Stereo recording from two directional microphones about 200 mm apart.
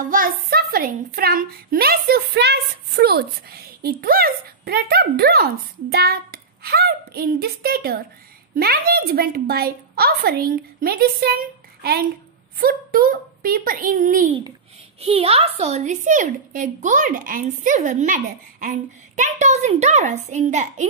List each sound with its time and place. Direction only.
0.0 s a woman's voice: 45° right (ahead or behind)
15.0 s a woman's voice: 30° right (ahead or behind)